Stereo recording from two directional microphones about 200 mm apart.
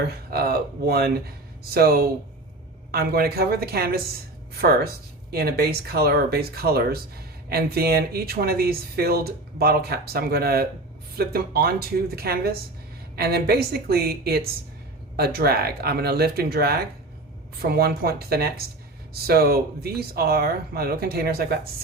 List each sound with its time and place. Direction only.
0.3 s speech: 50° right (ahead or behind)